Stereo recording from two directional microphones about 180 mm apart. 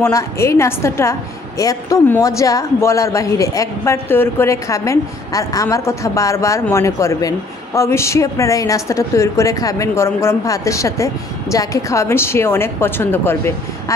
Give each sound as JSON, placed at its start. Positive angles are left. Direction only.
{"t": 0.0, "sound": "speech", "side_deg": 15}